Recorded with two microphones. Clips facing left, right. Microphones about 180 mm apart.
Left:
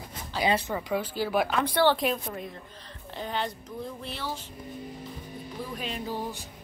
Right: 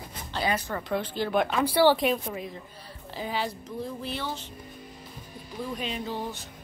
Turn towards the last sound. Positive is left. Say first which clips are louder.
# even
turn(degrees=10)  # may be behind; listen again after turning